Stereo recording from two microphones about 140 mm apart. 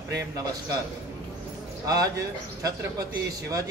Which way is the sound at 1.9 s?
25° right (ahead or behind).